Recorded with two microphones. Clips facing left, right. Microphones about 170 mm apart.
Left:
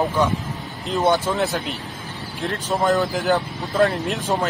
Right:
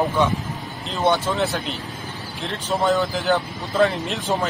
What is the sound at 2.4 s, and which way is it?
Speech, centre (ahead or behind).